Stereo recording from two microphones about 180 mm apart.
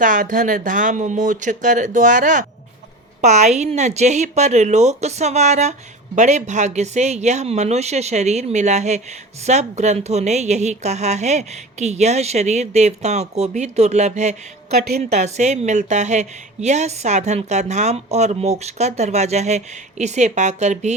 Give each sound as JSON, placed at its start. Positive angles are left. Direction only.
{"t": 0.0, "sound": "a woman's voice", "side_deg": -45}